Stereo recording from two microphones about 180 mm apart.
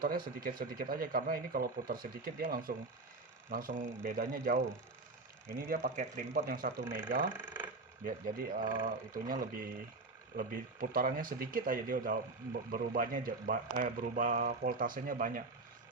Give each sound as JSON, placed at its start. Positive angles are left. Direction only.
{"t": 0.0, "sound": "speech", "side_deg": -55}
{"t": 5.5, "sound": "speech", "side_deg": -55}
{"t": 7.3, "sound": "a sound", "side_deg": -10}
{"t": 8.0, "sound": "speech", "side_deg": -55}
{"t": 8.6, "sound": "speech", "side_deg": -25}
{"t": 9.1, "sound": "speech", "side_deg": -50}